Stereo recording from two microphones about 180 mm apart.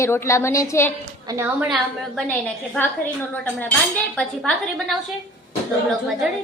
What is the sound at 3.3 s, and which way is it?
A woman's voice, 10° left (ahead or behind).